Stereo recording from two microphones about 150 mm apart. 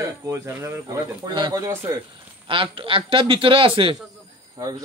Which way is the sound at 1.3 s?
30° right (ahead or behind).